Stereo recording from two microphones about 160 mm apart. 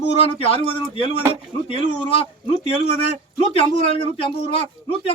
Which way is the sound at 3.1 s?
40° left (ahead or behind).